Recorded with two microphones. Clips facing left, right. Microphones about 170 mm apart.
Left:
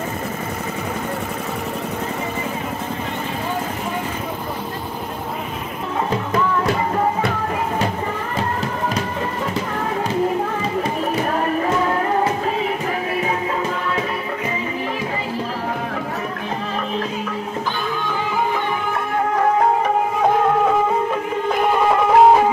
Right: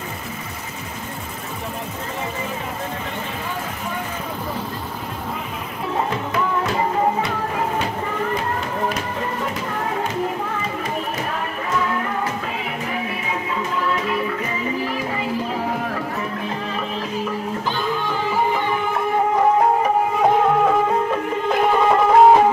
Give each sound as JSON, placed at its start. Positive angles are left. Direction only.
{"t": 21.5, "sound": "music", "side_deg": 0}